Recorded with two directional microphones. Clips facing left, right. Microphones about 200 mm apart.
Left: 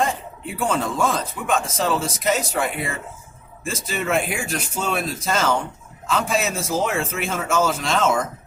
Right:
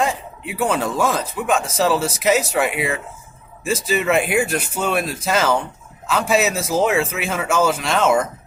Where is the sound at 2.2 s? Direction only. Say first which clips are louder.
Right 5 dB; 5° right (ahead or behind).